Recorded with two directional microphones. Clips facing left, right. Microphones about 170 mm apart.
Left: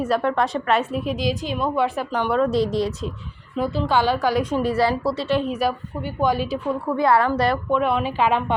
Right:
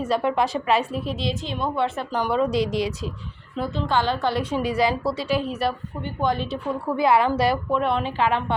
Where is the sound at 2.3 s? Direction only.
Centre (ahead or behind).